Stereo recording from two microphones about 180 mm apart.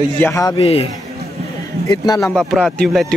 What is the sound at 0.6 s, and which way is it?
Speech, 30° left (ahead or behind).